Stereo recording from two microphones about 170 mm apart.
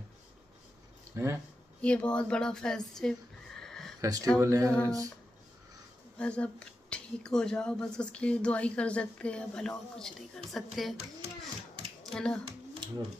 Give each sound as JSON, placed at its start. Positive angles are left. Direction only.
{"t": 1.1, "sound": "speech", "side_deg": -15}
{"t": 1.8, "sound": "a woman's voice", "side_deg": 5}
{"t": 3.6, "sound": "a sound", "side_deg": 0}
{"t": 4.0, "sound": "speech", "side_deg": -20}
{"t": 6.1, "sound": "a woman's voice", "side_deg": 5}
{"t": 12.0, "sound": "speech", "side_deg": 5}